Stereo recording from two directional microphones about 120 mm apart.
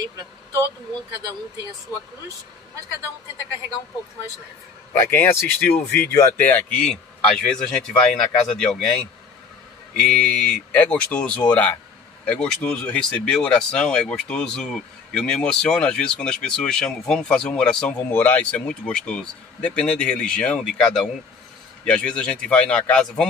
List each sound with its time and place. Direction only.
5.1 s speech: 15° left (ahead or behind)